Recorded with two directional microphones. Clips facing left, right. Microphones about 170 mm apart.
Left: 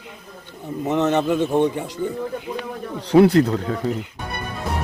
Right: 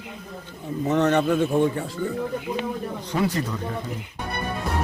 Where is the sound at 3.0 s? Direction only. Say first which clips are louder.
Left 13 dB; 70° left (ahead or behind).